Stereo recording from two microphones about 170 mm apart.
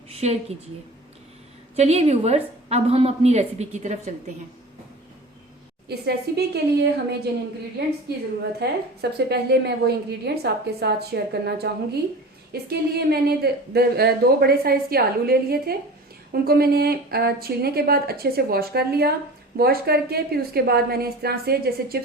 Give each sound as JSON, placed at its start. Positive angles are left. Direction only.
{"t": 0.1, "sound": "a sound", "side_deg": -40}
{"t": 1.7, "sound": "a woman's voice", "side_deg": -40}
{"t": 5.9, "sound": "a woman's voice", "side_deg": -70}
{"t": 8.5, "sound": "a woman's voice", "side_deg": -75}